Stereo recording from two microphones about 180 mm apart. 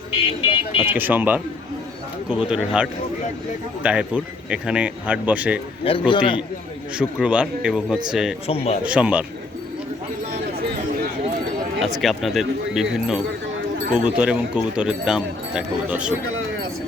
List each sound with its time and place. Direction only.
0.4 s speech: 30° left (ahead or behind)
0.8 s speech: 10° right (ahead or behind)
5.8 s a man's voice: 30° left (ahead or behind)
6.9 s speech: 5° right (ahead or behind)
8.4 s speech: 35° left (ahead or behind)
8.8 s speech: 5° right (ahead or behind)
11.9 s speech: centre (ahead or behind)